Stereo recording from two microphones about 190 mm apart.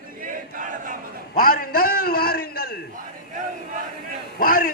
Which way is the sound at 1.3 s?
45° left (ahead or behind).